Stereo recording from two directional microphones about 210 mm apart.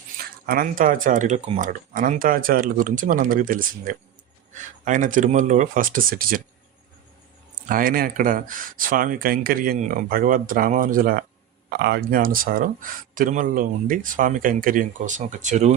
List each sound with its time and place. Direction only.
0.4 s speech: 45° right (ahead or behind)
7.7 s speech: 40° right (ahead or behind)